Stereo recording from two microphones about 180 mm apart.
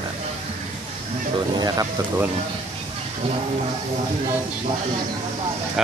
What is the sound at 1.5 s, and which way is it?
Speech, 20° right (ahead or behind).